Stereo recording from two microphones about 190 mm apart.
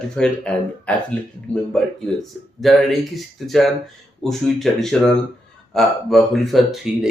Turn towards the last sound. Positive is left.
turn(degrees=0)  # may be behind; listen again after turning